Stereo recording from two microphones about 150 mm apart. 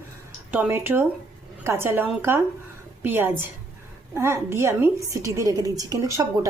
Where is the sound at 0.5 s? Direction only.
10° right (ahead or behind).